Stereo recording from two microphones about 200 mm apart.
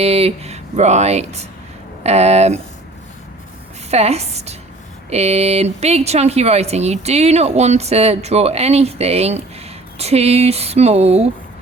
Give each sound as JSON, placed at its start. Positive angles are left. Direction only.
{"t": 0.0, "sound": "speech", "side_deg": -30}
{"t": 3.9, "sound": "speech", "side_deg": -30}